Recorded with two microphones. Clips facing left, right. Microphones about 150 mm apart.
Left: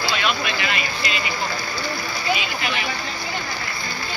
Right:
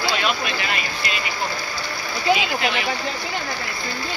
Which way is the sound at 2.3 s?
90° right.